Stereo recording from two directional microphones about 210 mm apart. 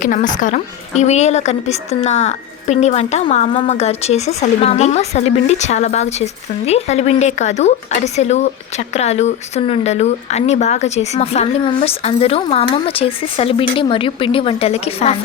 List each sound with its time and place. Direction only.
0.0 s a woman's voice: 40° left (ahead or behind)